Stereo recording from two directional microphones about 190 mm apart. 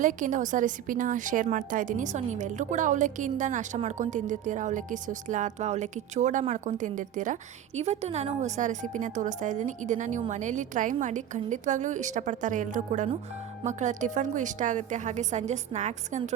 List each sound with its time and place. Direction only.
0.0 s a woman's voice: 40° right (ahead or behind)